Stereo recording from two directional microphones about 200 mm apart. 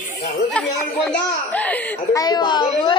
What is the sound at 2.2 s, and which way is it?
Speech, 20° left (ahead or behind).